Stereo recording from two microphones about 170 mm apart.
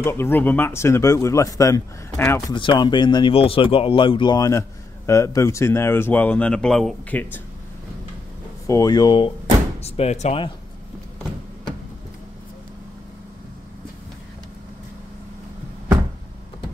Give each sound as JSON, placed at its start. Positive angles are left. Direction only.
{"t": 0.0, "sound": "a man's voice", "side_deg": 15}
{"t": 2.5, "sound": "a man's voice", "side_deg": 30}
{"t": 8.6, "sound": "speech", "side_deg": 20}
{"t": 9.8, "sound": "speech", "side_deg": 40}